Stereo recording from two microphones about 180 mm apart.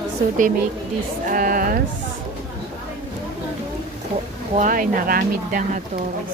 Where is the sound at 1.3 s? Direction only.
50° right (ahead or behind).